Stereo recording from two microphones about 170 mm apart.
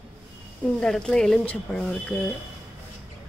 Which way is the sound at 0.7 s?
5° left (ahead or behind).